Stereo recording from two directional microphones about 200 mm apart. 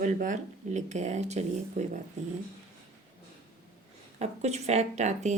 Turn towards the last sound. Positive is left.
turn(degrees=-35)  # may be behind; listen again after turning